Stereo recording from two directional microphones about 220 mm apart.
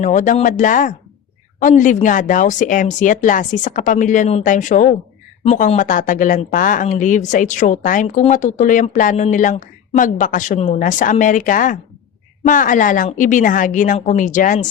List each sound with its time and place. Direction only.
0.0 s speech: 35° left (ahead or behind)